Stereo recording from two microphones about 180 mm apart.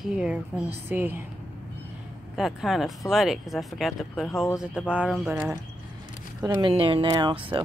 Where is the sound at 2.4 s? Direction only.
Centre (ahead or behind).